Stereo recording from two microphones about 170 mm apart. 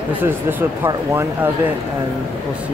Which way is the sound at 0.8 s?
15° right (ahead or behind).